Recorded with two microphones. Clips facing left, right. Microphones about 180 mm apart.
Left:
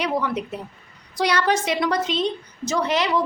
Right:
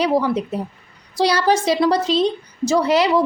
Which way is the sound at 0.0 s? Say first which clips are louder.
Right 6 dB; 35° right (ahead or behind).